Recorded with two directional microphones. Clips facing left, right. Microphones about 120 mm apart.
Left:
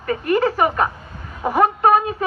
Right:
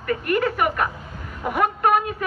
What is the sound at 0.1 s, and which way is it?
A woman's voice, 30° left (ahead or behind).